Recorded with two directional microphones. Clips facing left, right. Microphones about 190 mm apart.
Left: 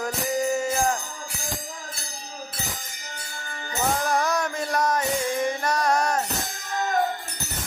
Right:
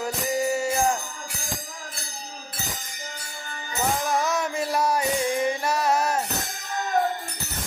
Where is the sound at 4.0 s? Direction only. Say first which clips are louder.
Left 1 dB; centre (ahead or behind).